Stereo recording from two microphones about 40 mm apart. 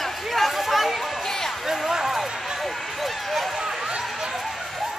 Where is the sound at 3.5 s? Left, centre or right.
Centre.